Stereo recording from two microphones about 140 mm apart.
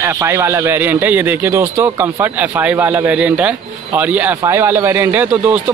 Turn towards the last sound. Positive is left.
turn(degrees=-15)  # may be behind; listen again after turning